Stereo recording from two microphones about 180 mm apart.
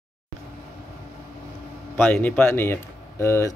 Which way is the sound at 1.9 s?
10° left (ahead or behind).